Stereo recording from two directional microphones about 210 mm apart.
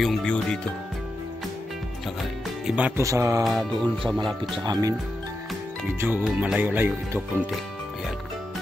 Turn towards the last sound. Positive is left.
turn(degrees=-10)  # may be behind; listen again after turning